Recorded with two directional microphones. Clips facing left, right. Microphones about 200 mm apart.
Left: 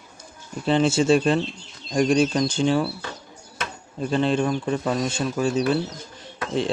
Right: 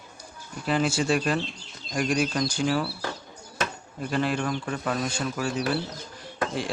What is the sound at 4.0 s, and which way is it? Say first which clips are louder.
Speech: left 5 dB; 25° left (ahead or behind).